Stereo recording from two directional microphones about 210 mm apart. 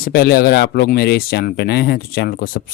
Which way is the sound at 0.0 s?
50° left (ahead or behind).